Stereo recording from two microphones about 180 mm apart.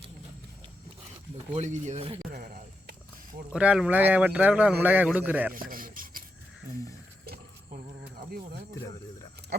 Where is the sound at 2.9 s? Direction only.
50° right (ahead or behind).